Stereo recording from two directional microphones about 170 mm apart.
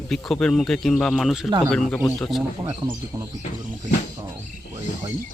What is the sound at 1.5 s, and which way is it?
Speech, 25° right (ahead or behind).